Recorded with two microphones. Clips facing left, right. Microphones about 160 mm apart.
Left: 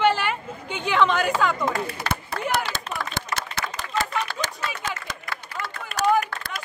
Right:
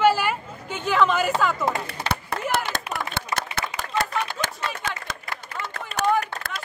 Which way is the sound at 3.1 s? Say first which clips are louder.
Right 1 dB; 55° right (ahead or behind).